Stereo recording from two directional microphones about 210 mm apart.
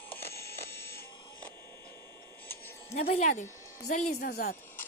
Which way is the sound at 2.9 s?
35° left (ahead or behind).